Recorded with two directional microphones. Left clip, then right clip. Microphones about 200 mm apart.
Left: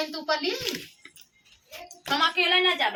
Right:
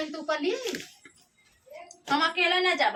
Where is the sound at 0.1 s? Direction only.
20° right (ahead or behind).